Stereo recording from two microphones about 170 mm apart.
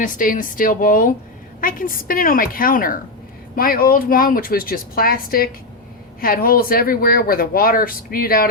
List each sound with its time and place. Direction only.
0.0 s a woman's voice: 50° left (ahead or behind)